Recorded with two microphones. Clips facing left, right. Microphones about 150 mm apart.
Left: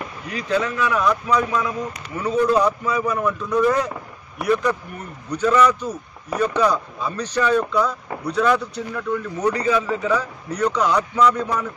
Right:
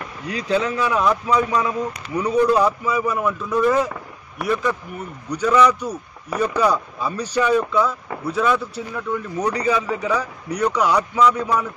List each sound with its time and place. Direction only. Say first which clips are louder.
0.3 s speech: right 1 dB; 30° right (ahead or behind)
2.1 s speech: right 1 dB; 10° right (ahead or behind)